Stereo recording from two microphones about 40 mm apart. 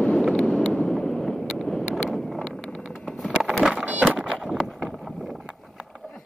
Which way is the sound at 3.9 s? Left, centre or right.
Right.